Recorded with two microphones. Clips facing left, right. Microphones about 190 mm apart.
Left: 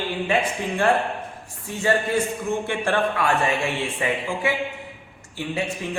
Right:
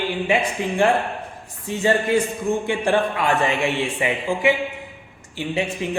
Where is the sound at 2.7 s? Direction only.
15° right (ahead or behind).